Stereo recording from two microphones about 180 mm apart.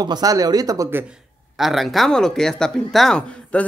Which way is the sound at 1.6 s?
Centre (ahead or behind).